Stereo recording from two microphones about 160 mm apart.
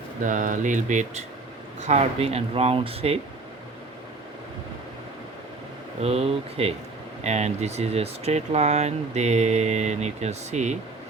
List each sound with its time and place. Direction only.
0.2 s speech: 55° right (ahead or behind); by 3.2 s 40° right (ahead or behind)
6.0 s speech: 40° right (ahead or behind)